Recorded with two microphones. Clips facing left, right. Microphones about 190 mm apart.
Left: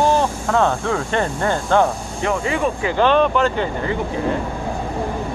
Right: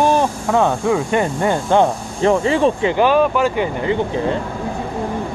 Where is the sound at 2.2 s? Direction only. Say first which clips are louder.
Right 6 dB; 30° right (ahead or behind).